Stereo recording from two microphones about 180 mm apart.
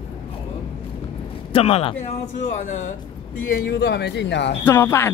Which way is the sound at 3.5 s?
65° left (ahead or behind).